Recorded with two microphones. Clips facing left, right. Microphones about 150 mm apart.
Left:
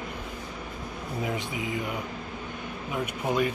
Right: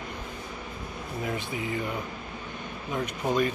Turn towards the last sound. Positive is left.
turn(degrees=10)  # may be behind; listen again after turning